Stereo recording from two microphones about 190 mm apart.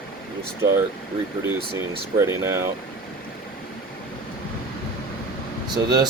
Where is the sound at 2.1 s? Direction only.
15° right (ahead or behind).